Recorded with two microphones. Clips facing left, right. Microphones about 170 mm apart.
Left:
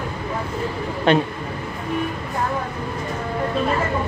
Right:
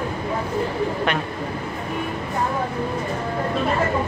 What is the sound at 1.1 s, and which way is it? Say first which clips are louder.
Speech: left 12 dB; 30° left (ahead or behind).